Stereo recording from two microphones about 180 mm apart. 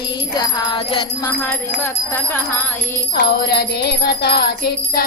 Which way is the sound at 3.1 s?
65° left (ahead or behind).